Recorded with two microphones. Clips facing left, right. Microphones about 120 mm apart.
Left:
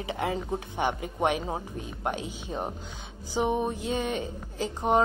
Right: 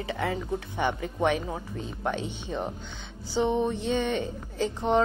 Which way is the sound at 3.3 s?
10° left (ahead or behind).